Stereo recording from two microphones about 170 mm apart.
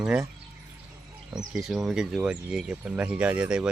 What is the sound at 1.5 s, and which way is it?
Speech, centre (ahead or behind).